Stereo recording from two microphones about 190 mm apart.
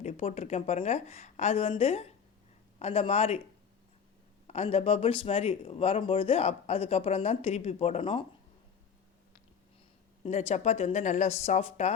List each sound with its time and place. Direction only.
0.0 s speech: 35° left (ahead or behind)
4.4 s speech: 35° left (ahead or behind)
10.2 s speech: 35° left (ahead or behind)